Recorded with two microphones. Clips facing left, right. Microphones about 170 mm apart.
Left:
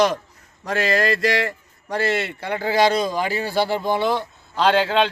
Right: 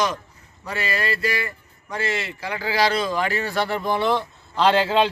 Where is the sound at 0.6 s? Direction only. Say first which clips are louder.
Left 6 dB; 90° left; by 3.6 s 35° left (ahead or behind).